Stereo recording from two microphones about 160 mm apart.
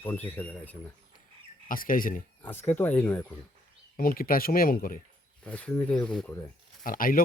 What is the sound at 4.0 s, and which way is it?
Speech, 65° left (ahead or behind).